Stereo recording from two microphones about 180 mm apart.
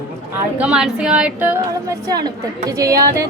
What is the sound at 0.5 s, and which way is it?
Speech, 5° right (ahead or behind).